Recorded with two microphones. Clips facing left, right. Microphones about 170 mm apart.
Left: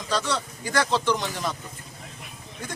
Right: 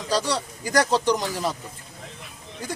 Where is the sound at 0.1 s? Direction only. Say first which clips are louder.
Right 2 dB; 35° right (ahead or behind).